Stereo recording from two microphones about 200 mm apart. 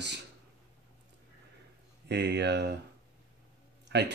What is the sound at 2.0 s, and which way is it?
Speech, 55° right (ahead or behind).